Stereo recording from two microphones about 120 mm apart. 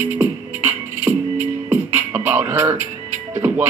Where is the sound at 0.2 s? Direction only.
15° right (ahead or behind).